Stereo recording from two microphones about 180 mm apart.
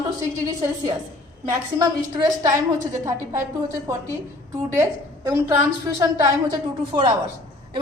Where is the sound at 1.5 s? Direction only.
20° right (ahead or behind).